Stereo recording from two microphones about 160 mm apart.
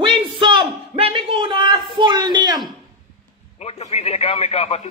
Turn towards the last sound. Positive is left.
turn(degrees=40)  # may be behind; listen again after turning